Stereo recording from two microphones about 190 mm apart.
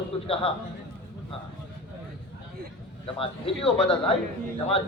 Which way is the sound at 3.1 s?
30° left (ahead or behind).